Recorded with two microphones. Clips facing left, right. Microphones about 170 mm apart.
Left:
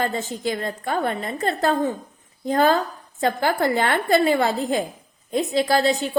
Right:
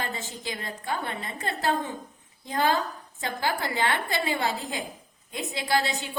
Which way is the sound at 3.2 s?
50° left (ahead or behind).